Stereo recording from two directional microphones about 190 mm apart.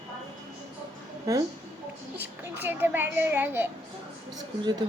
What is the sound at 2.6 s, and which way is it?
Speech, 10° right (ahead or behind).